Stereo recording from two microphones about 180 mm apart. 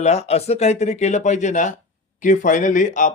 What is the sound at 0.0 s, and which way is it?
Speech, 35° left (ahead or behind).